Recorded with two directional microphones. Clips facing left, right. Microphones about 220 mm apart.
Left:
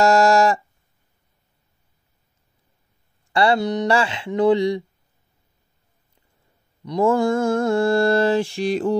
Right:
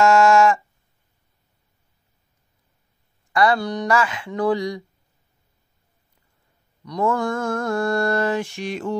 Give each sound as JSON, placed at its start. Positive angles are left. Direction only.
{"t": 0.0, "sound": "a sound", "side_deg": 35}
{"t": 3.3, "sound": "mantra", "side_deg": 25}
{"t": 6.8, "sound": "mantra", "side_deg": 25}